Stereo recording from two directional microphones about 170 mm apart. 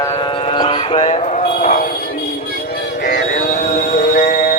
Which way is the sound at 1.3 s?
50° left (ahead or behind).